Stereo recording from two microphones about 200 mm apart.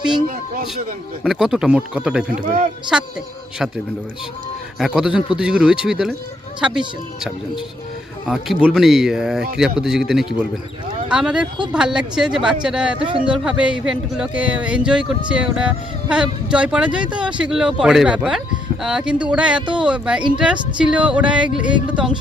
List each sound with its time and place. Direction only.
0.3 s a man's voice: 45° right (ahead or behind)
1.2 s speech: centre (ahead or behind)
2.4 s a man's voice: 45° right (ahead or behind)
3.6 s speech: centre (ahead or behind)
4.8 s speech: 5° right (ahead or behind)